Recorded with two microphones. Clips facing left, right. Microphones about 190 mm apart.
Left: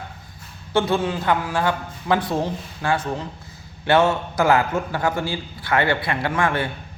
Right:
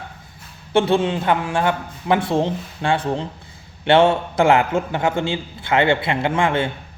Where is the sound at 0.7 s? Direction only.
25° right (ahead or behind).